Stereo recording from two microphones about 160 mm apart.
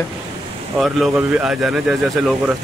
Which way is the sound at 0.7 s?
Centre (ahead or behind).